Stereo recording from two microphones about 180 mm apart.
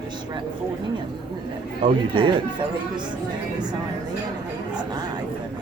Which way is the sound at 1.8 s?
30° right (ahead or behind).